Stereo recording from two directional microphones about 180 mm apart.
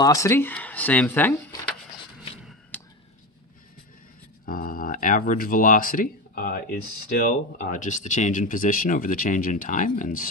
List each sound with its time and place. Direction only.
0.0 s speech: 15° left (ahead or behind)
4.5 s speech: 50° left (ahead or behind)